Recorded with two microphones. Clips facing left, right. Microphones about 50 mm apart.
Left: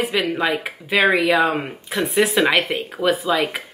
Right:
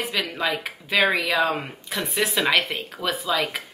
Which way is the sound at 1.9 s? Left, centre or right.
Left.